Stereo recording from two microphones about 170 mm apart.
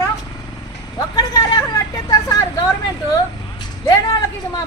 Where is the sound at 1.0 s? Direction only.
20° left (ahead or behind).